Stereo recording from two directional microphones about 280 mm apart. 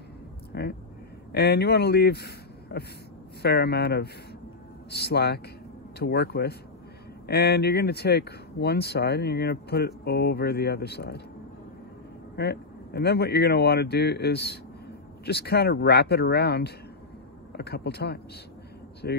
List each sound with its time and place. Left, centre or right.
0.5 s speech: left
12.4 s speech: left